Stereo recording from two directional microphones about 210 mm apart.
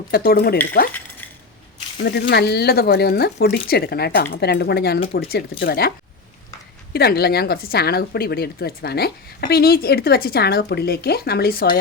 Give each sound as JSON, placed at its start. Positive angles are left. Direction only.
{"t": 0.1, "sound": "speech", "side_deg": 45}
{"t": 2.0, "sound": "speech", "side_deg": 50}
{"t": 6.9, "sound": "speech", "side_deg": 50}